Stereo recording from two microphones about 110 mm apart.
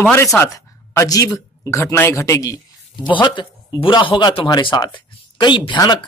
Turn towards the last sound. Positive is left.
turn(degrees=40)  # may be behind; listen again after turning